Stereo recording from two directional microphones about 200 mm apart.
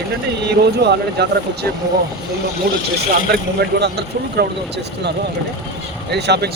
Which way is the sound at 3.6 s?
55° right (ahead or behind).